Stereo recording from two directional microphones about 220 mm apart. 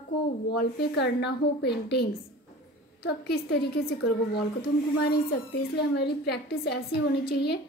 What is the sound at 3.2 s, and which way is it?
Speech, 45° left (ahead or behind).